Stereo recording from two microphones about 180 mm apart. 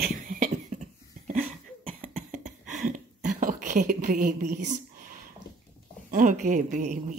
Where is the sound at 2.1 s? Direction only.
40° right (ahead or behind).